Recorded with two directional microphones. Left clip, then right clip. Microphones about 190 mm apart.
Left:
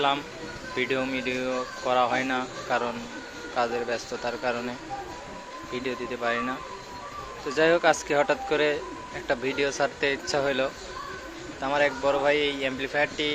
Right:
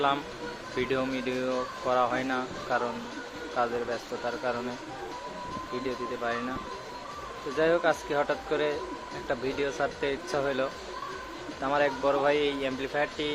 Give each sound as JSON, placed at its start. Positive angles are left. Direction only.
{"t": 0.8, "sound": "speech", "side_deg": 0}
{"t": 5.7, "sound": "speech", "side_deg": 10}
{"t": 7.5, "sound": "speech", "side_deg": 10}